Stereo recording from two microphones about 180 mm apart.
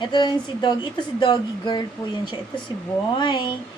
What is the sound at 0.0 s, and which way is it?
Speech, 25° left (ahead or behind).